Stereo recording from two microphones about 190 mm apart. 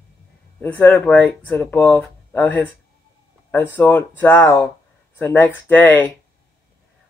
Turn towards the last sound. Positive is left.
turn(degrees=10)  # may be behind; listen again after turning